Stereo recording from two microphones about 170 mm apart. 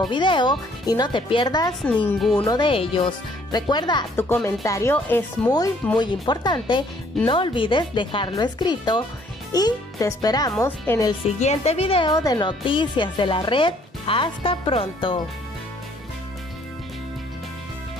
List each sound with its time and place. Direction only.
0.1 s speech: 25° left (ahead or behind)
4.2 s speech: 15° left (ahead or behind)
5.9 s speech: 25° left (ahead or behind)
11.2 s speech: 40° left (ahead or behind)